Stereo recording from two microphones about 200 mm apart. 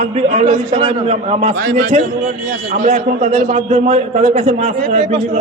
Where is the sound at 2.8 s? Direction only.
35° right (ahead or behind).